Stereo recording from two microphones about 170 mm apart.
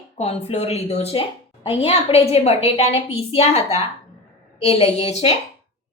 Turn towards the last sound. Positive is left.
turn(degrees=35)  # may be behind; listen again after turning